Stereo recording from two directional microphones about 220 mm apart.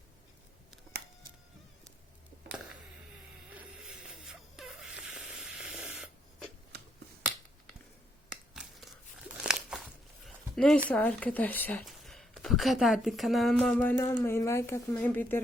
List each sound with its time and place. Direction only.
3.5 s a sound: 5° right (ahead or behind)
9.4 s crumpling: 5° right (ahead or behind)
10.8 s speech: 5° left (ahead or behind)